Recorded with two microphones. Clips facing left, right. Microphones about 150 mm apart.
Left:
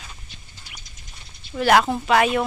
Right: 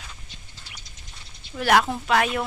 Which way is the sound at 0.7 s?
30° right (ahead or behind).